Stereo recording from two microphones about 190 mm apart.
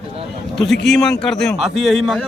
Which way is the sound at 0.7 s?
65° left (ahead or behind).